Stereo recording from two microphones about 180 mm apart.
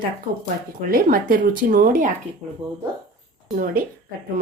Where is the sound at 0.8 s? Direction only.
55° right (ahead or behind).